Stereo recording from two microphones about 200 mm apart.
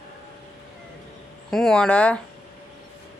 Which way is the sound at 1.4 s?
Centre (ahead or behind).